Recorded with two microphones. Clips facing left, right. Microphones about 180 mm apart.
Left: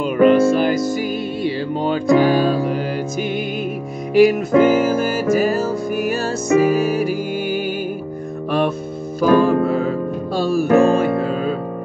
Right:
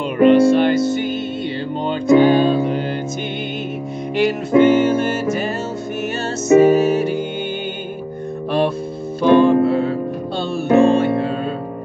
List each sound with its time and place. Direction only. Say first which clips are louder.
0.2 s music: right 2 dB; 30° right (ahead or behind)
4.3 s music: right 1 dB; 30° right (ahead or behind)
8.5 s music: right 1 dB; 30° right (ahead or behind)